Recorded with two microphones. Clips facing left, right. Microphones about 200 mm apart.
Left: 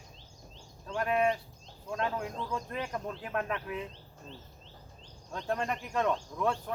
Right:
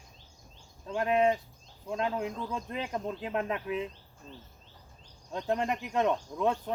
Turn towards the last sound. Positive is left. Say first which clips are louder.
# right 2 dB
turn(degrees=-20)  # may be behind; listen again after turning